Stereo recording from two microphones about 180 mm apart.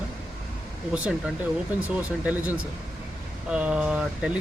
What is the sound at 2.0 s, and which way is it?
Speech, 10° right (ahead or behind).